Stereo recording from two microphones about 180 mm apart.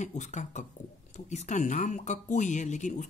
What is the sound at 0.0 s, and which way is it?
Speech, 40° left (ahead or behind).